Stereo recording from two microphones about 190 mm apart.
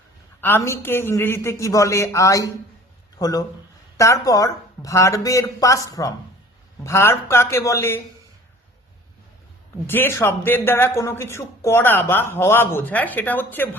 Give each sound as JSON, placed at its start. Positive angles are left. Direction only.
{"t": 0.4, "sound": "speech", "side_deg": 10}
{"t": 9.8, "sound": "speech", "side_deg": 10}